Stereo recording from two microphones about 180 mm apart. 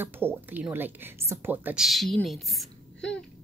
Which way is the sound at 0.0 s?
10° right (ahead or behind).